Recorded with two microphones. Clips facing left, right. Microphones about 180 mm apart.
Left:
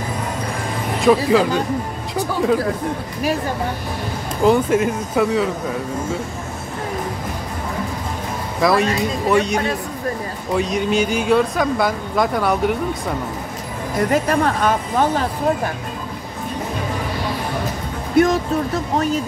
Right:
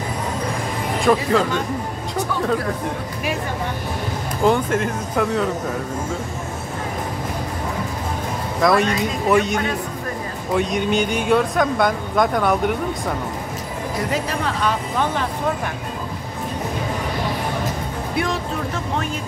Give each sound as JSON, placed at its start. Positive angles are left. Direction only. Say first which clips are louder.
{"t": 1.0, "sound": "speech", "louder": "left 3 dB", "side_deg": 5}
{"t": 4.5, "sound": "speech", "louder": "left 3 dB", "side_deg": 5}
{"t": 8.5, "sound": "speech", "louder": "left 1 dB", "side_deg": 5}
{"t": 14.1, "sound": "speech", "louder": "left 8 dB", "side_deg": 50}
{"t": 18.1, "sound": "speech", "louder": "left 9 dB", "side_deg": 45}